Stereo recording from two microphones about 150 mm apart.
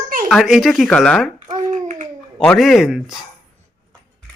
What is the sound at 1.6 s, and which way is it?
Babbling, 55° right (ahead or behind).